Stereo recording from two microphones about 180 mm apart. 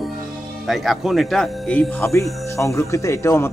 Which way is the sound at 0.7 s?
Centre (ahead or behind).